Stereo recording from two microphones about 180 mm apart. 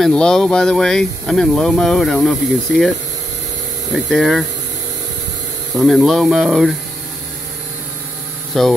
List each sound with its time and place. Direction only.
0.0 s speech: 5° left (ahead or behind)
3.9 s speech: centre (ahead or behind)
5.8 s speech: centre (ahead or behind)
8.5 s speech: centre (ahead or behind)